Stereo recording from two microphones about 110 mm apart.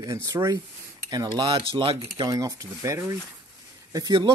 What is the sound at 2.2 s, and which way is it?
Speech, 35° right (ahead or behind).